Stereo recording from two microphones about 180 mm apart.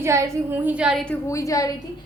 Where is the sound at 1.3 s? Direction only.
20° left (ahead or behind).